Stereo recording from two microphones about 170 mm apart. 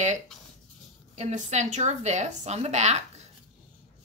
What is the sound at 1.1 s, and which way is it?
A woman's voice, 40° right (ahead or behind).